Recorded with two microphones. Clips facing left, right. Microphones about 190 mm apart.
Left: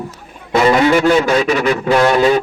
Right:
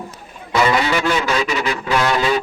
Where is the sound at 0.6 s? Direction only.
45° left (ahead or behind).